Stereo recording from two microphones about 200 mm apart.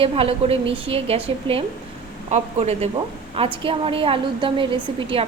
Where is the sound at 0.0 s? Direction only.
30° right (ahead or behind).